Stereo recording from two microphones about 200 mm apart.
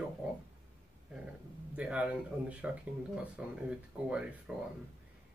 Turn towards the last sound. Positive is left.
turn(degrees=-5)  # may be behind; listen again after turning